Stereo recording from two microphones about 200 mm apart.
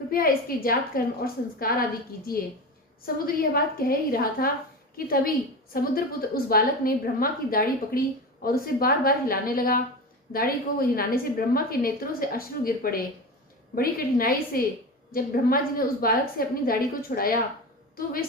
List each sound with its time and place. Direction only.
0.1 s a woman's voice: 45° left (ahead or behind)
3.2 s a woman's voice: 45° left (ahead or behind)